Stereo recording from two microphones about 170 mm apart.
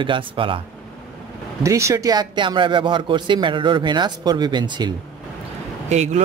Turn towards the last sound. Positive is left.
turn(degrees=-40)  # may be behind; listen again after turning